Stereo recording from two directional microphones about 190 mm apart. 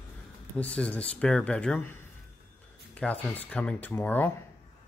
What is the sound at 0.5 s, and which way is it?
Speech, 5° left (ahead or behind).